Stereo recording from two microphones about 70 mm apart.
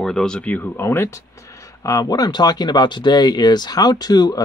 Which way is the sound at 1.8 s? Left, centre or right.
Left.